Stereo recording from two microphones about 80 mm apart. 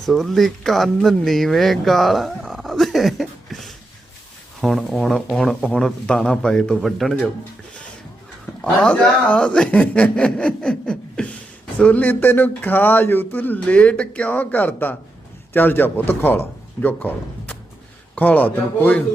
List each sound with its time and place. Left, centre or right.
0.0 s speech: centre
8.6 s a man's voice: centre